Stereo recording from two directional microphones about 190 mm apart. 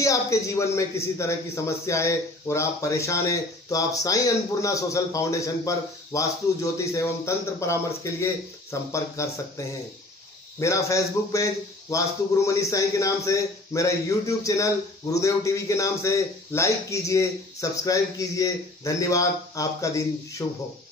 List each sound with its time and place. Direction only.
0.0 s a man's voice: 15° left (ahead or behind)